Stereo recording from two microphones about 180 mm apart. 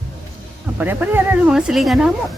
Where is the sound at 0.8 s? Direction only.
10° right (ahead or behind).